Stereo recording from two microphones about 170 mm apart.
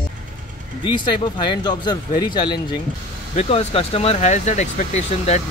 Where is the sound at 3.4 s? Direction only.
35° left (ahead or behind).